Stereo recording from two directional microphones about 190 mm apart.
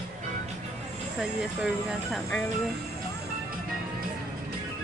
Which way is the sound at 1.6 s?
5° left (ahead or behind).